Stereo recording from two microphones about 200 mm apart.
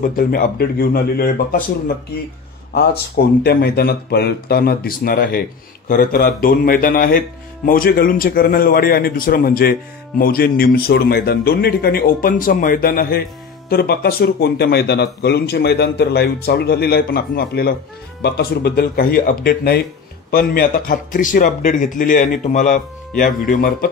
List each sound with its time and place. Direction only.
0.1 s speech: 45° left (ahead or behind)
3.4 s speech: 55° left (ahead or behind)